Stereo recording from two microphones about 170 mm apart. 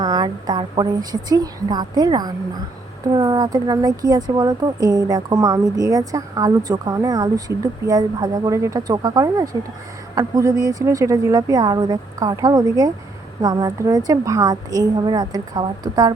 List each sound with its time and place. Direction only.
0.0 s speech: 25° right (ahead or behind)